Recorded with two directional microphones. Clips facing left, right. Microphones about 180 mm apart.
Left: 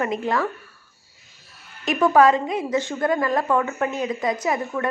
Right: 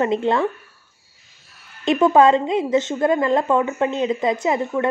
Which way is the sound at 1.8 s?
25° right (ahead or behind).